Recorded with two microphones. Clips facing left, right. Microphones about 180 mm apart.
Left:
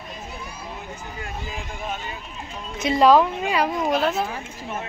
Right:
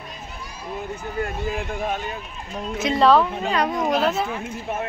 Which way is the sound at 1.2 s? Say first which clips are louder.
Right 8 dB; 55° right (ahead or behind).